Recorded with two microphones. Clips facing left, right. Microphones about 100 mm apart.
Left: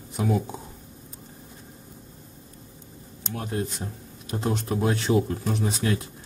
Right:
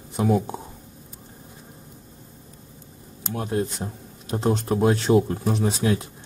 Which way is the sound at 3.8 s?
30° right (ahead or behind).